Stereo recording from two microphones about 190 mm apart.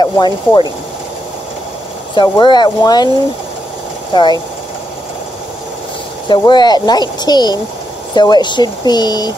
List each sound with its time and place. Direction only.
0.0 s speech: 20° left (ahead or behind)
2.1 s speech: 25° left (ahead or behind)
4.1 s speech: 25° left (ahead or behind)
6.2 s speech: 25° left (ahead or behind)